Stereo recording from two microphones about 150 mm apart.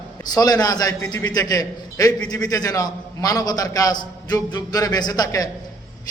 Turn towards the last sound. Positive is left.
turn(degrees=25)  # may be behind; listen again after turning